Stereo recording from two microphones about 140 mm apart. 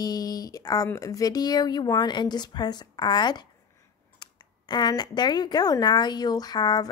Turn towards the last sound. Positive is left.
turn(degrees=30)  # may be behind; listen again after turning